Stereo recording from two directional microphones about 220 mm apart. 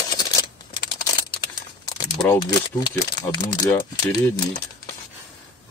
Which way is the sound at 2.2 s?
15° left (ahead or behind).